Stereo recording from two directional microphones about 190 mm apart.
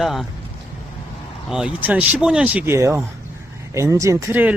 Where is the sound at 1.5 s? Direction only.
5° right (ahead or behind).